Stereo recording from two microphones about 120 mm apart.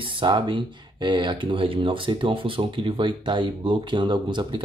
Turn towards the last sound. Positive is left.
turn(degrees=-40)  # may be behind; listen again after turning